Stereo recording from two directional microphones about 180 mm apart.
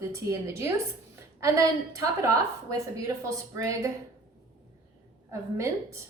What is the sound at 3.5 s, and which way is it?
Speech, 15° right (ahead or behind).